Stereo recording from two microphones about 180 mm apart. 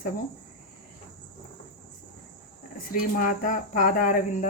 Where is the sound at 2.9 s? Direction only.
50° left (ahead or behind).